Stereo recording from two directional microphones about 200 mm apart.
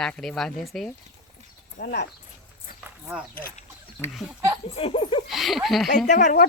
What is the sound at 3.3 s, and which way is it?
Speech, 45° left (ahead or behind).